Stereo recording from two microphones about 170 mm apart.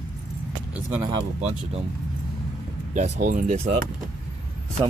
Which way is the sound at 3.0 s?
50° right (ahead or behind).